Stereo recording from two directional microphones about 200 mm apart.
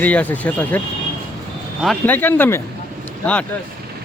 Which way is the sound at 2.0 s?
10° left (ahead or behind).